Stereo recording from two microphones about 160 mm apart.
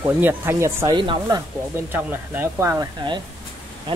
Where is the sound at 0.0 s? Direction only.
10° right (ahead or behind).